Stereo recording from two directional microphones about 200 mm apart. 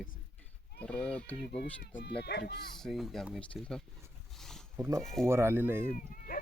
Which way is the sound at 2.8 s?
Centre (ahead or behind).